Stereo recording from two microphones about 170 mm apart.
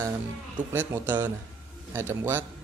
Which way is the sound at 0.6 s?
10° right (ahead or behind).